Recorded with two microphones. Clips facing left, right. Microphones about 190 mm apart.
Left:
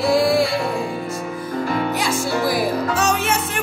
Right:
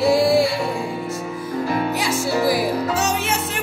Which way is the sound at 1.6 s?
55° left (ahead or behind).